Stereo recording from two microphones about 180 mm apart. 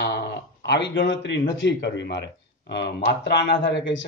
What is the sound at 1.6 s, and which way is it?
A man's voice, 75° left (ahead or behind).